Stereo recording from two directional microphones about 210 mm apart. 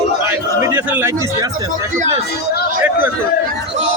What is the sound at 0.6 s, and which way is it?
Chatter, 10° right (ahead or behind).